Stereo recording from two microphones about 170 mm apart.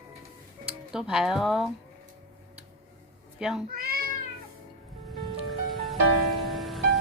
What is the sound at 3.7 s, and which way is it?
Speech, 55° right (ahead or behind).